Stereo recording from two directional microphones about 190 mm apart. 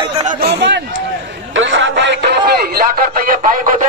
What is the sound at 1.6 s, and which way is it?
Music, 80° right.